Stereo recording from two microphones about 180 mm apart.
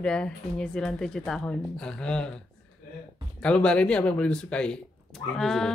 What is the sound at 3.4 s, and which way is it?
Speech, 5° left (ahead or behind).